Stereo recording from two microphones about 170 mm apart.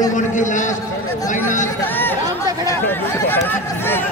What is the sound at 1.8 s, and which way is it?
Speech, 10° left (ahead or behind).